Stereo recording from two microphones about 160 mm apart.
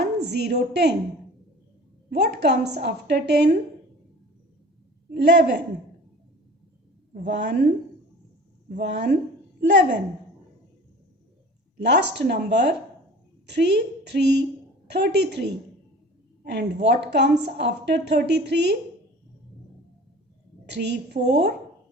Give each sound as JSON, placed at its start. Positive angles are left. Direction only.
{"t": 0.0, "sound": "a woman's voice", "side_deg": -90}
{"t": 2.0, "sound": "a woman's voice", "side_deg": -90}
{"t": 5.1, "sound": "a woman's voice", "side_deg": -90}
{"t": 7.1, "sound": "a woman's voice", "side_deg": -90}
{"t": 8.7, "sound": "a woman's voice", "side_deg": -90}
{"t": 11.8, "sound": "a woman's voice", "side_deg": -90}
{"t": 20.7, "sound": "a woman's voice", "side_deg": -90}